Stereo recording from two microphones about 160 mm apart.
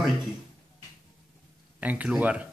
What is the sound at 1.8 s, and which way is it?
Speech, 10° right (ahead or behind).